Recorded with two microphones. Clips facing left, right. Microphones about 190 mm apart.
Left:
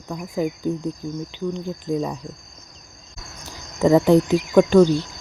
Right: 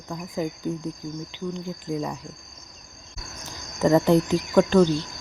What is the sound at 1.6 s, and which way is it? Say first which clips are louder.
Speech: left 4 dB; 20° left (ahead or behind).